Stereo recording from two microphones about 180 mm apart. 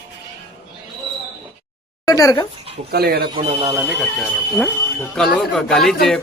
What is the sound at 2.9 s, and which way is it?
Speech, 60° right (ahead or behind).